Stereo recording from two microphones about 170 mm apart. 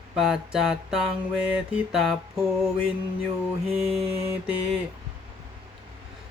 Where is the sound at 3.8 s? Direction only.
Centre (ahead or behind).